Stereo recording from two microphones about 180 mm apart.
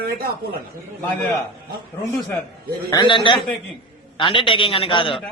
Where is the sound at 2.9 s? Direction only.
25° left (ahead or behind).